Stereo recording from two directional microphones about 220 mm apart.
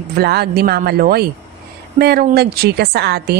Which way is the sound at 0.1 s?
45° right (ahead or behind).